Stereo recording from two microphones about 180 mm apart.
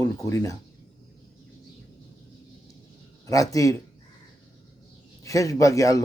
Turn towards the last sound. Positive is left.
turn(degrees=20)  # may be behind; listen again after turning